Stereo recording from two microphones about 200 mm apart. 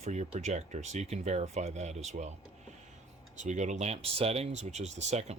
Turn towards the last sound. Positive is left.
turn(degrees=-35)  # may be behind; listen again after turning